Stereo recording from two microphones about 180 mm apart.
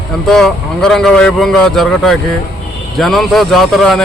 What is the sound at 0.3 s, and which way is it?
Speech, centre (ahead or behind).